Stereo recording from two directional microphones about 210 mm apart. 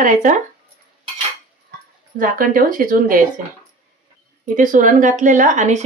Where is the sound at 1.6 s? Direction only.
40° right (ahead or behind).